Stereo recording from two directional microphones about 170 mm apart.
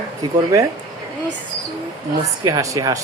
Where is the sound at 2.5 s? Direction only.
20° right (ahead or behind).